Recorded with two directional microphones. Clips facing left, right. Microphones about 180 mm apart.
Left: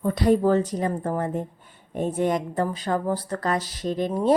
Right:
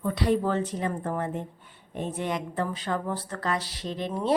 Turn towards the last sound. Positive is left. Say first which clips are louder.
# left 6 dB
turn(degrees=45)  # may be behind; listen again after turning